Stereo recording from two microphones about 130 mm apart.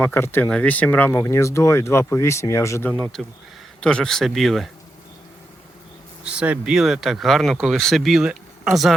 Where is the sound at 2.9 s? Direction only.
5° left (ahead or behind).